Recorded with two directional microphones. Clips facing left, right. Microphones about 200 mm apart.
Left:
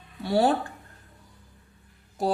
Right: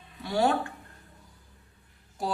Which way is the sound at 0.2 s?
35° left (ahead or behind).